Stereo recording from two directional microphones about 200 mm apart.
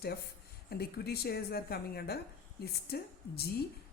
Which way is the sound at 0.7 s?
50° left (ahead or behind).